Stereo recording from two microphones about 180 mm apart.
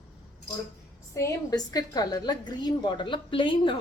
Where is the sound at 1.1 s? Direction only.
20° left (ahead or behind).